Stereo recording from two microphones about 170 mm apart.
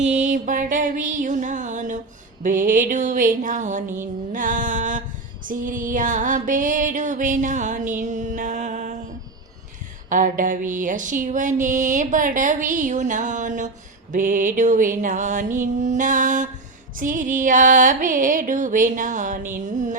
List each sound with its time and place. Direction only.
0.0 s music: 45° right (ahead or behind)